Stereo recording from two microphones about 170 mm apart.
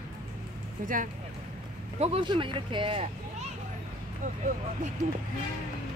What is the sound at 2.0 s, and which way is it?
Speech, 30° right (ahead or behind).